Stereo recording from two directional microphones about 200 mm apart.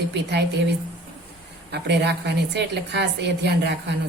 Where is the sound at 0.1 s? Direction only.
60° right (ahead or behind).